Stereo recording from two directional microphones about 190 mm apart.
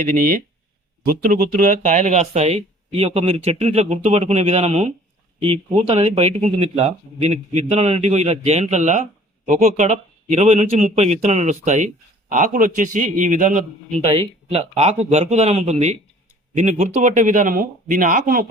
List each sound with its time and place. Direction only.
0.0 s a man's voice: 45° right (ahead or behind)